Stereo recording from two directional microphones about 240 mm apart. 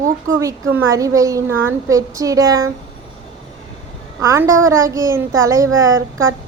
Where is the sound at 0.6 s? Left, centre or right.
Right.